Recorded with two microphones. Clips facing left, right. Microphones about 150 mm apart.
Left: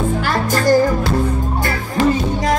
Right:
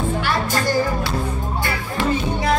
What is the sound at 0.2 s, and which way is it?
Music, 45° left (ahead or behind).